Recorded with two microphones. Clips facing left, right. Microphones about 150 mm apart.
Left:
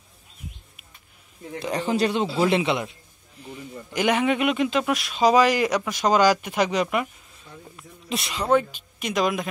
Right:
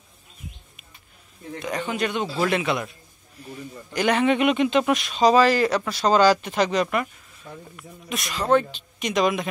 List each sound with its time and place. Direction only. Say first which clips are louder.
1.6 s a man's voice: left 3 dB; 35° left (ahead or behind); by 7.1 s 10° left (ahead or behind)
7.7 s speech: left 3 dB; 25° left (ahead or behind)
8.5 s speech: right 1 dB; 10° left (ahead or behind)